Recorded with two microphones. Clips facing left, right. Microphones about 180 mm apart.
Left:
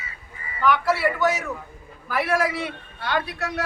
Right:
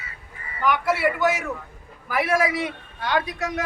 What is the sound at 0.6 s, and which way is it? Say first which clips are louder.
A man's voice: left 1 dB; 15° right (ahead or behind).